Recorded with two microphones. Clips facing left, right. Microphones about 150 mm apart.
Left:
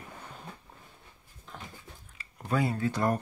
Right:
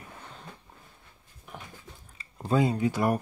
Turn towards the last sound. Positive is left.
turn(degrees=-10)  # may be behind; listen again after turning